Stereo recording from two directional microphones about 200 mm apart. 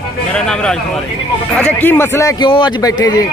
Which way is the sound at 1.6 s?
10° left (ahead or behind).